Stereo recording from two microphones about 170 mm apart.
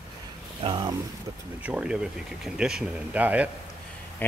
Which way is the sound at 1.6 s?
5° right (ahead or behind).